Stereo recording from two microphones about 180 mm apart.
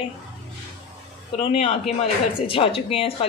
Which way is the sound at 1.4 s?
35° left (ahead or behind).